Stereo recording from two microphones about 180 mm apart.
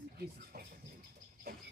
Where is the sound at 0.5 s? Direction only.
55° right (ahead or behind).